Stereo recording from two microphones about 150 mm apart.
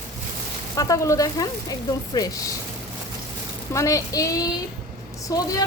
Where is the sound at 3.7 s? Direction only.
20° left (ahead or behind).